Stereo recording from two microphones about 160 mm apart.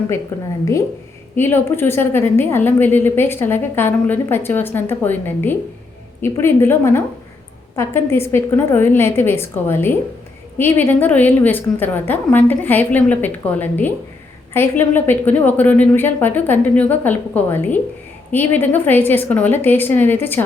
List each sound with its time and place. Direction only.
0.6 s a woman's voice: 20° left (ahead or behind)